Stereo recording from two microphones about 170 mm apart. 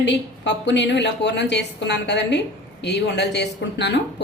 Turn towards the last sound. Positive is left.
turn(degrees=90)